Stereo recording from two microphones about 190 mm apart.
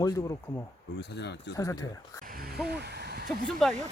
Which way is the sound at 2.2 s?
50° right (ahead or behind).